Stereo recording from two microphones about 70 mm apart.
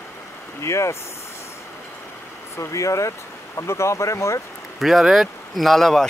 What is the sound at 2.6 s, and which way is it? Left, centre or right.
Speech, left.